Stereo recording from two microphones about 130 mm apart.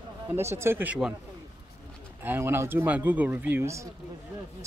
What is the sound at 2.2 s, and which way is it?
Speech, 15° right (ahead or behind).